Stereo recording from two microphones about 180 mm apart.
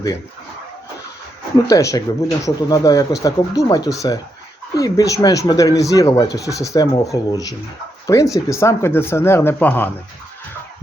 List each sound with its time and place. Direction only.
1.7 s speech: 15° left (ahead or behind)